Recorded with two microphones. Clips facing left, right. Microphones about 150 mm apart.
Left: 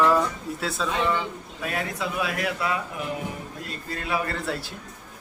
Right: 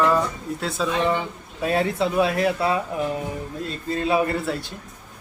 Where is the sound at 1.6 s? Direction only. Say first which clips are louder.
Right 8 dB; 30° right (ahead or behind).